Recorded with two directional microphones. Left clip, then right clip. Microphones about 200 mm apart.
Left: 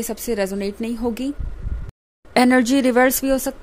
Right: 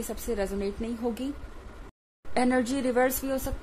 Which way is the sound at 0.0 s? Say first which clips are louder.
Left 8 dB; 40° left (ahead or behind).